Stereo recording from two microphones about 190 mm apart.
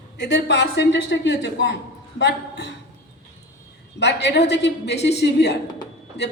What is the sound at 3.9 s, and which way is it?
A woman's voice, 65° left (ahead or behind).